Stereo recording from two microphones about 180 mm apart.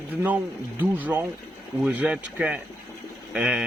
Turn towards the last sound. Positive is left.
turn(degrees=-5)  # may be behind; listen again after turning